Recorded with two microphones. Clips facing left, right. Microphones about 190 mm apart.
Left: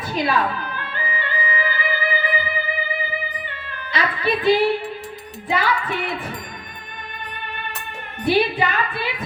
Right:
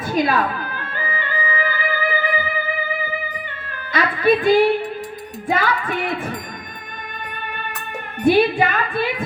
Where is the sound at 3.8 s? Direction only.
50° right (ahead or behind).